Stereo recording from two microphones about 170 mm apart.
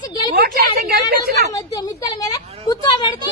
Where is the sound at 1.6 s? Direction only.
20° left (ahead or behind).